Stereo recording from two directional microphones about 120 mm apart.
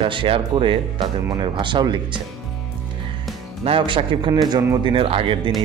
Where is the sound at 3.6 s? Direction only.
50° right (ahead or behind).